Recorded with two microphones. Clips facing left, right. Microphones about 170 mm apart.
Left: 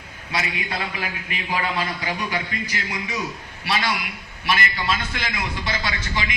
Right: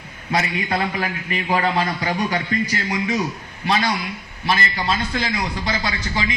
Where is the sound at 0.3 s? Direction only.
45° right (ahead or behind).